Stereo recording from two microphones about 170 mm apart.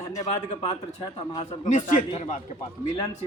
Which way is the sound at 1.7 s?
45° left (ahead or behind).